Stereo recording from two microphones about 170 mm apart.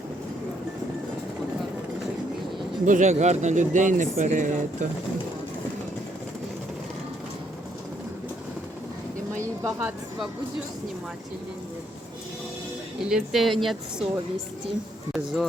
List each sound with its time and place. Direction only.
2.8 s speech: 45° right (ahead or behind)
9.4 s a sound: 15° right (ahead or behind)
13.1 s speech: centre (ahead or behind)
15.1 s speech: centre (ahead or behind)